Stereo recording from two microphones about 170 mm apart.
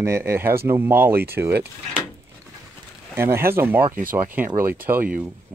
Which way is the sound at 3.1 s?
15° right (ahead or behind).